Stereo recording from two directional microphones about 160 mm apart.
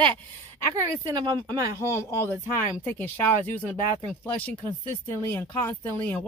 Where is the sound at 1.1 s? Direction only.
25° right (ahead or behind).